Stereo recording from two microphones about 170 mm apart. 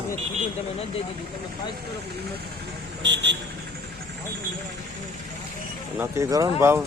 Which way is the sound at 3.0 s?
90° right.